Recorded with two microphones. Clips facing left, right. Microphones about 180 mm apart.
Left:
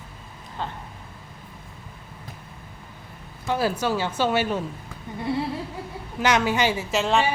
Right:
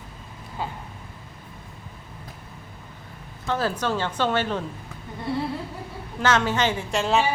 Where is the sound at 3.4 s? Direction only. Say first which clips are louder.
Left 1 dB; 10° left (ahead or behind).